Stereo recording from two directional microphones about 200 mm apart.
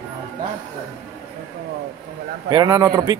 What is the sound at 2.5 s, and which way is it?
Speech, 20° right (ahead or behind).